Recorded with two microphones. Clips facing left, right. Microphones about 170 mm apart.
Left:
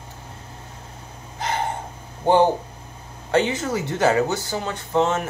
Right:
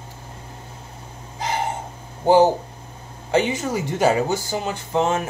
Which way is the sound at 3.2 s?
10° right (ahead or behind).